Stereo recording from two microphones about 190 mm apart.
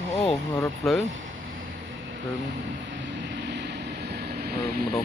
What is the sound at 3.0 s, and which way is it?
Vehicle, 70° right (ahead or behind).